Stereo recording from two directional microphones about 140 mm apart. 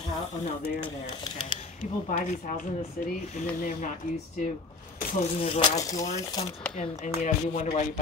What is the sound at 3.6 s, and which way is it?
Speech, 80° left.